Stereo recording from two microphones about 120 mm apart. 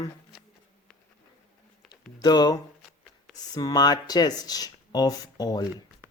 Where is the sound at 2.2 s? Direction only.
35° left (ahead or behind).